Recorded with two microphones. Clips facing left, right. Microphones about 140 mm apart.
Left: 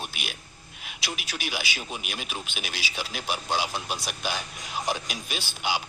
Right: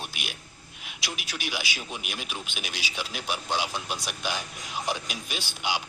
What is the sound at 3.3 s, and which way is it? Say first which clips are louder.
Speech: left 1 dB; 10° left (ahead or behind).